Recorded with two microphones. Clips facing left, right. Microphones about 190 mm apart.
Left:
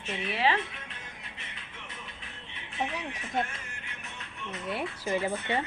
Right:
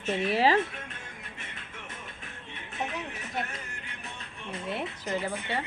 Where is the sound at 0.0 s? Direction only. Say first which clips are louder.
Right 4 dB; 40° right (ahead or behind).